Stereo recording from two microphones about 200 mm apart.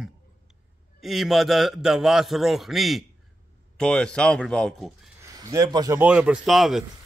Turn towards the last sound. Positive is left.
turn(degrees=0)  # may be behind; listen again after turning